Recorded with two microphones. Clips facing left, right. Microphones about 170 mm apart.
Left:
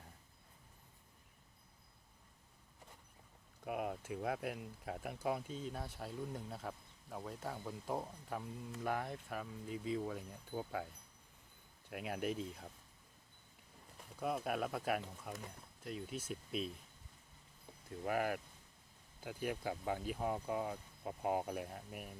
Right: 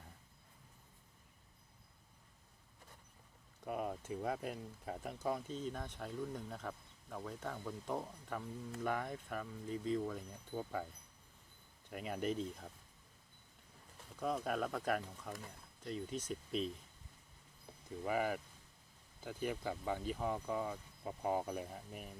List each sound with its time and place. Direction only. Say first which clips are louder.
3.7 s speech: even; 70° left (ahead or behind)
4.0 s speech: even; 5° left (ahead or behind)
11.9 s speech: right 1 dB; 5° left (ahead or behind)
14.2 s speech: right 1 dB; 10° left (ahead or behind)
18.0 s speech: even; 5° left (ahead or behind)